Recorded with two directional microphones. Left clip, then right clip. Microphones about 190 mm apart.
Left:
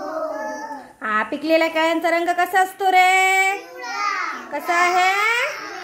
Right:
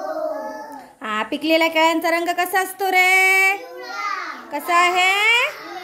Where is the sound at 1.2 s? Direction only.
15° right (ahead or behind).